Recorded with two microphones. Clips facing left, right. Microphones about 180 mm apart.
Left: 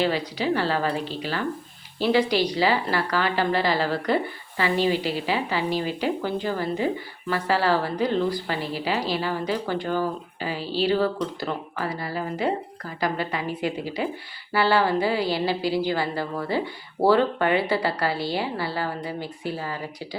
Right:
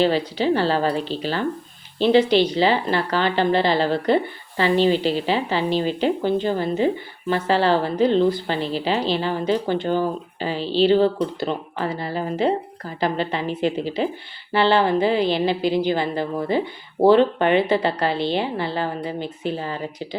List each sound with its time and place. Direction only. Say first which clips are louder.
0.0 s a woman's voice: right 5 dB; 30° right (ahead or behind)